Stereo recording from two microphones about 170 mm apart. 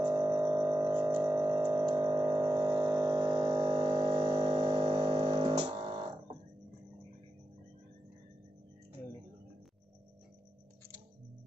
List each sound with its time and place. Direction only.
0.0 s music: 20° right (ahead or behind)